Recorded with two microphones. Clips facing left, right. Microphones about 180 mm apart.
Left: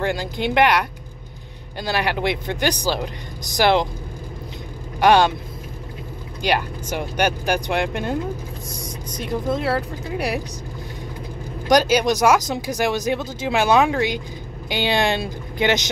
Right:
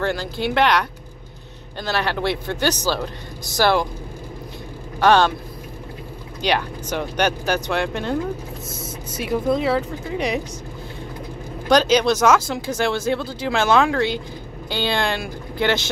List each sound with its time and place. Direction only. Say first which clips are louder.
0.0 s speech: even; 15° left (ahead or behind)
5.0 s speech: left 1 dB; 15° left (ahead or behind)
6.4 s speech: even; 10° left (ahead or behind)
8.6 s speech: even; 5° right (ahead or behind)
11.6 s speech: even; 10° left (ahead or behind)